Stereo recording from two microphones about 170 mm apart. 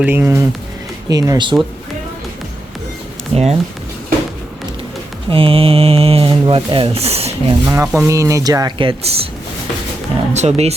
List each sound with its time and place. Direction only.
0.0 s speech: 10° right (ahead or behind)
3.3 s speech: 35° right (ahead or behind)
5.3 s speech: 35° right (ahead or behind)
7.6 s speech: 15° right (ahead or behind)
10.3 s speech: 40° right (ahead or behind)